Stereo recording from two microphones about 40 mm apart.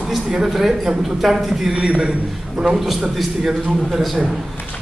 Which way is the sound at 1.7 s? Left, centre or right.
Centre.